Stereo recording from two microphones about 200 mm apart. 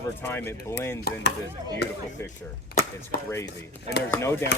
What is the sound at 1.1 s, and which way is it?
Chop, 50° left (ahead or behind).